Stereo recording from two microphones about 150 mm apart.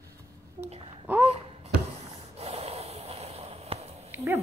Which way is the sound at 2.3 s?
45° right (ahead or behind).